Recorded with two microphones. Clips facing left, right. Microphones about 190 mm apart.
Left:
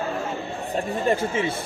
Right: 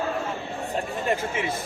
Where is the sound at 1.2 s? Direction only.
30° left (ahead or behind).